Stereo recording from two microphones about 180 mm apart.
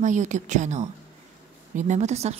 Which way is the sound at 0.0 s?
45° right (ahead or behind).